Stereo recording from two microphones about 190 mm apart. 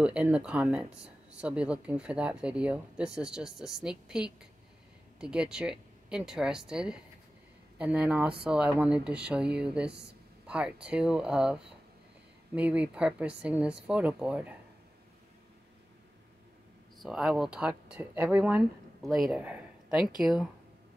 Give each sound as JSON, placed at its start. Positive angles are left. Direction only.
{"t": 0.0, "sound": "speech", "side_deg": -5}
{"t": 17.0, "sound": "speech", "side_deg": 0}